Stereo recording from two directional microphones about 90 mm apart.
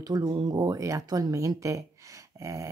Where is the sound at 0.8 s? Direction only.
40° right (ahead or behind).